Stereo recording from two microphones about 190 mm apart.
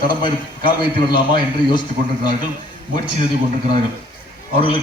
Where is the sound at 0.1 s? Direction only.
25° left (ahead or behind).